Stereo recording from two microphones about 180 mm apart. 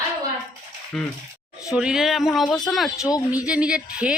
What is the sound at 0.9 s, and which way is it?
Speech, centre (ahead or behind).